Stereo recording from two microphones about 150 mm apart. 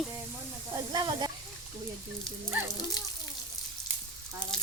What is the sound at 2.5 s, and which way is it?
Speech, 15° right (ahead or behind).